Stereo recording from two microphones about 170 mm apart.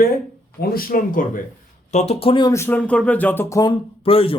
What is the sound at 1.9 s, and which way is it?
Speech, 40° left (ahead or behind).